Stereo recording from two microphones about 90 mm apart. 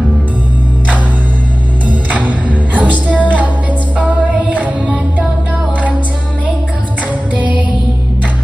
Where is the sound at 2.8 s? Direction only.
15° right (ahead or behind).